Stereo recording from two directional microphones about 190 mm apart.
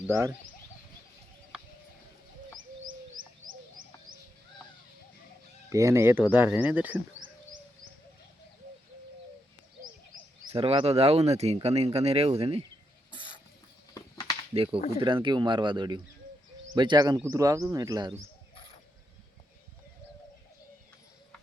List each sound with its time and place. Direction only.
0.1 s speech: 15° right (ahead or behind)
5.7 s speech: 15° right (ahead or behind)
10.5 s speech: 30° right (ahead or behind)
13.9 s a sound: 20° left (ahead or behind)
14.5 s speech: 30° right (ahead or behind)
18.5 s wild animals: 30° left (ahead or behind)